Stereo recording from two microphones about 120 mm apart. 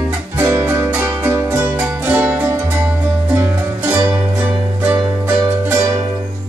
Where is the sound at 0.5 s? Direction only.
25° right (ahead or behind).